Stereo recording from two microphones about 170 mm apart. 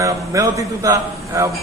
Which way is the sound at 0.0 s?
20° right (ahead or behind).